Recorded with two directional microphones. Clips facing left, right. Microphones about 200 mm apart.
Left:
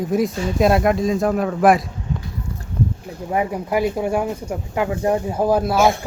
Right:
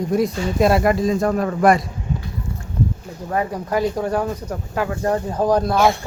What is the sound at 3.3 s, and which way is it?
Speech, 15° left (ahead or behind).